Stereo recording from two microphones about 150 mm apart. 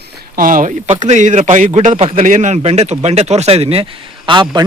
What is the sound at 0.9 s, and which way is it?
A man's voice, 50° right (ahead or behind).